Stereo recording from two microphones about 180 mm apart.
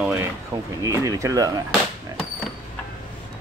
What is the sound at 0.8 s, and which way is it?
Speech, 20° right (ahead or behind).